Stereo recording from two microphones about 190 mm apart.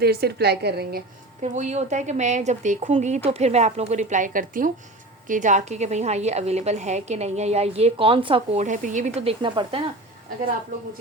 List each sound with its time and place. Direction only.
0.0 s a woman's voice: 55° right (ahead or behind)
1.4 s a woman's voice: 35° right (ahead or behind)
8.6 s a woman's voice: 40° right (ahead or behind)